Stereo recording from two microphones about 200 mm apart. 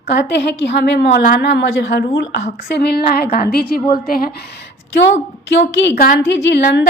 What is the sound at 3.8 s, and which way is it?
Speech, 20° left (ahead or behind).